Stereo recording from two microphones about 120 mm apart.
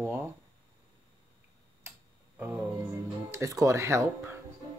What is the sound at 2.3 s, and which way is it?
Music, 15° right (ahead or behind).